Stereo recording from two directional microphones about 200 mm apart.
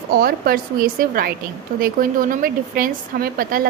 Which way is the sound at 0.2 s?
45° right (ahead or behind).